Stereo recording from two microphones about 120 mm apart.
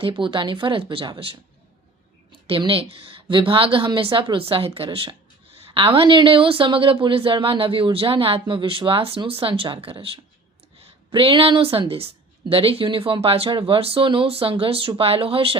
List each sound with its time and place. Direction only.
0.0 s a woman's voice: 45° right (ahead or behind)
2.5 s a woman's voice: 50° right (ahead or behind)